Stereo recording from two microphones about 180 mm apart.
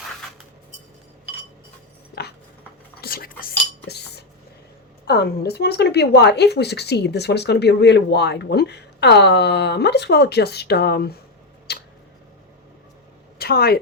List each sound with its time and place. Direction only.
2.2 s a sound: 65° left (ahead or behind)
3.0 s cutlery: 55° left (ahead or behind)
3.8 s cutlery: 65° left (ahead or behind)
5.0 s speech: 60° left (ahead or behind)
11.7 s tick-tock: 65° left (ahead or behind)
13.4 s speech: 60° left (ahead or behind)